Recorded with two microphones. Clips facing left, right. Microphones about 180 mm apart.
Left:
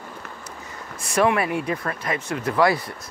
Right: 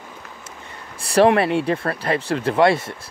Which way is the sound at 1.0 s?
35° right (ahead or behind).